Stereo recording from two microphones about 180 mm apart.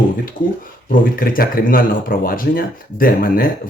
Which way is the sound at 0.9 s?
50° left (ahead or behind).